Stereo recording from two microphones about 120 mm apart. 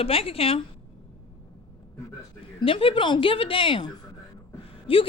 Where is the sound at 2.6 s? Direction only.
50° left (ahead or behind).